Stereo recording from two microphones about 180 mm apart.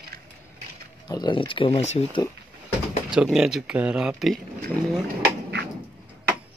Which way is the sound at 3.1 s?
5° right (ahead or behind).